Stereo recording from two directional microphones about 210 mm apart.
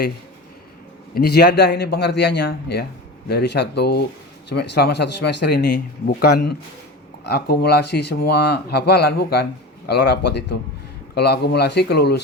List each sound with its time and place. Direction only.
1.1 s speech: 50° left (ahead or behind)